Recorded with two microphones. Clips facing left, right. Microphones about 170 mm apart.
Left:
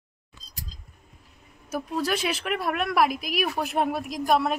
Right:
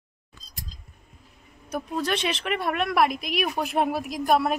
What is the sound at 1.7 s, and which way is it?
A woman's voice, 5° left (ahead or behind).